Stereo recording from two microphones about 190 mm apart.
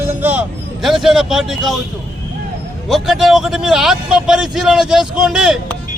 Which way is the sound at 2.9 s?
Centre (ahead or behind).